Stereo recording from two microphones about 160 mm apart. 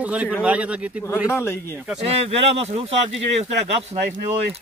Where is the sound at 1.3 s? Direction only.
15° left (ahead or behind).